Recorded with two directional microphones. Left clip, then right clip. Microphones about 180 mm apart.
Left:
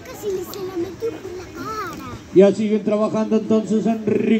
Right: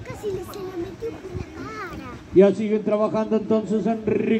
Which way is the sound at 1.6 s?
55° left (ahead or behind).